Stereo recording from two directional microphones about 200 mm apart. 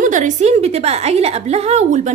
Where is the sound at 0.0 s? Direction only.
40° right (ahead or behind).